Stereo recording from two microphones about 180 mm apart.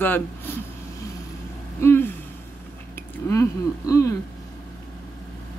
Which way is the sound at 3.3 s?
15° left (ahead or behind).